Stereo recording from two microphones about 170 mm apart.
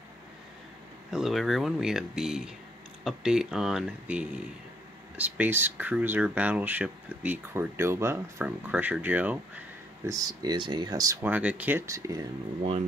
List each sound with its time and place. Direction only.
1.1 s speech: centre (ahead or behind)
10.0 s speech: 20° right (ahead or behind)